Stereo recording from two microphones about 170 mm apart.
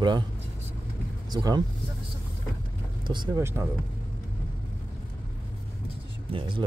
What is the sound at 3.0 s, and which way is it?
Speech, 25° right (ahead or behind).